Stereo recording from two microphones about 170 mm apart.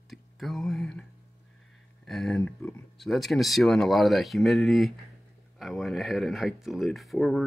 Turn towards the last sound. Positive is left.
turn(degrees=0)  # may be behind; listen again after turning